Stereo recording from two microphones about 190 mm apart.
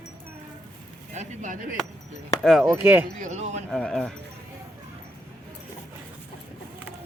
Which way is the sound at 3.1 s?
40° right (ahead or behind).